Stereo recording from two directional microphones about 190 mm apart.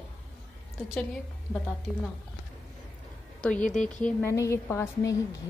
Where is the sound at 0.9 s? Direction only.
5° left (ahead or behind).